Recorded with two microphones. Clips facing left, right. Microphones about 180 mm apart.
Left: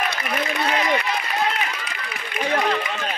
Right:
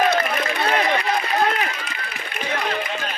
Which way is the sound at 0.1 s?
55° right (ahead or behind).